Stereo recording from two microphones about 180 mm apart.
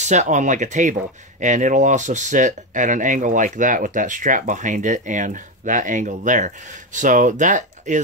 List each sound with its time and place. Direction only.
0.0 s speech: 40° right (ahead or behind)